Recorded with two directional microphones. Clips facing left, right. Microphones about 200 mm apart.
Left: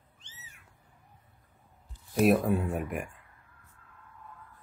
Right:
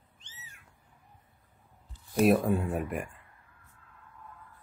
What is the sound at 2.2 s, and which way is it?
Speech, centre (ahead or behind).